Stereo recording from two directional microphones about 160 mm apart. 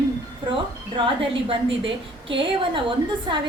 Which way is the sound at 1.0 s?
35° right (ahead or behind).